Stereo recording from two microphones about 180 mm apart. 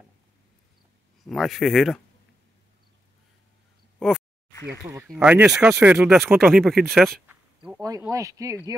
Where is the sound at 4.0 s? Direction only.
5° right (ahead or behind).